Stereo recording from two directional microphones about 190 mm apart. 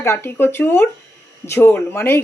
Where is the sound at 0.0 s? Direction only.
10° left (ahead or behind).